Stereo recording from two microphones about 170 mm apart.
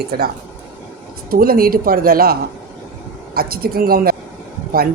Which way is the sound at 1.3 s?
60° right (ahead or behind).